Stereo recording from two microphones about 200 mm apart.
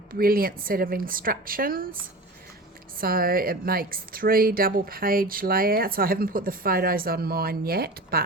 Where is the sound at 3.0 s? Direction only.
45° right (ahead or behind).